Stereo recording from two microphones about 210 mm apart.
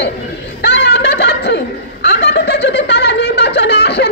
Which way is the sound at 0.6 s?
50° left (ahead or behind).